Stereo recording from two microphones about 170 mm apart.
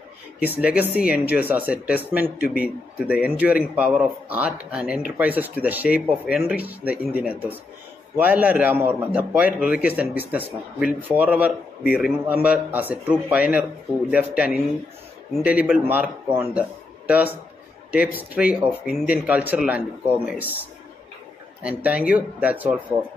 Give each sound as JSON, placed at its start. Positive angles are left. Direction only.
{"t": 0.4, "sound": "speech", "side_deg": -10}
{"t": 21.6, "sound": "speech", "side_deg": -10}